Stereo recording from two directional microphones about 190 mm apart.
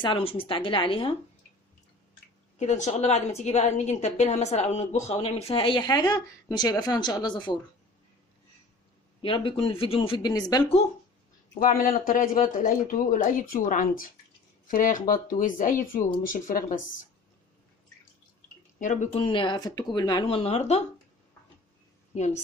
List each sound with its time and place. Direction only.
0.0 s speech: 25° left (ahead or behind)
2.6 s a woman's voice: 40° left (ahead or behind); by 7.6 s 25° left (ahead or behind)
9.2 s speech: 30° left (ahead or behind)
11.6 s speech: 45° left (ahead or behind)
18.8 s speech: 40° left (ahead or behind)
22.1 s a woman's voice: 35° left (ahead or behind)